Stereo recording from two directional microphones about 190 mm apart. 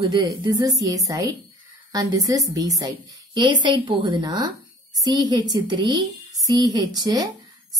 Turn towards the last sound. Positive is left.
turn(degrees=-20)  # may be behind; listen again after turning